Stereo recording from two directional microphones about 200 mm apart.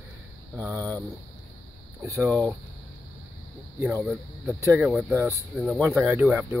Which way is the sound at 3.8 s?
10° right (ahead or behind).